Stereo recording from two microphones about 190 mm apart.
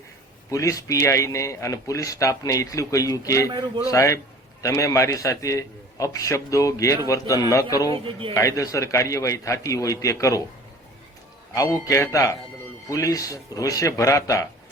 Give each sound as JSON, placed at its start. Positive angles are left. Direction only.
{"t": 0.5, "sound": "a man's voice", "side_deg": 15}
{"t": 11.5, "sound": "a man's voice", "side_deg": 15}